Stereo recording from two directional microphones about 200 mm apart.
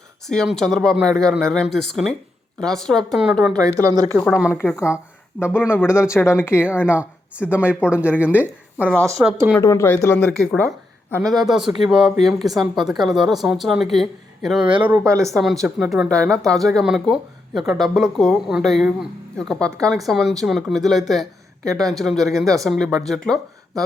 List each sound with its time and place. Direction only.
0.3 s speech: 5° left (ahead or behind)
3.6 s speech: 15° right (ahead or behind)
4.5 s speech: 10° left (ahead or behind)
5.5 s speech: 5° right (ahead or behind)
5.9 s speech: 15° left (ahead or behind)
6.8 s speech: 5° right (ahead or behind)
7.5 s speech: 10° left (ahead or behind)
8.2 s speech: 5° right (ahead or behind)
9.6 s speech: 15° left (ahead or behind); by 15.3 s 15° right (ahead or behind)
15.3 s speech: centre (ahead or behind)